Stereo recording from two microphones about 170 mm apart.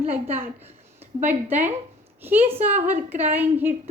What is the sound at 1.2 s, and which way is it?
A woman's voice, 10° right (ahead or behind).